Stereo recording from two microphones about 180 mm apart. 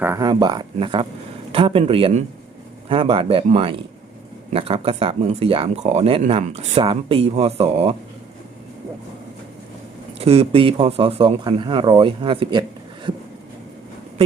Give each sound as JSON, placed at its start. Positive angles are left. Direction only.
{"t": 0.0, "sound": "speech", "side_deg": -15}
{"t": 10.2, "sound": "speech", "side_deg": -35}